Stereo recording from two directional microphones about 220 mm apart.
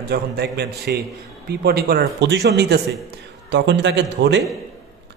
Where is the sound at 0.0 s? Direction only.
50° right (ahead or behind).